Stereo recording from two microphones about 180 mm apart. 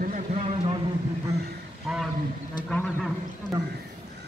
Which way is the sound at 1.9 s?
5° right (ahead or behind).